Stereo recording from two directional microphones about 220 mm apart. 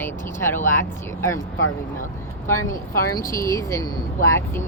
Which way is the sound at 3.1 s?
15° left (ahead or behind).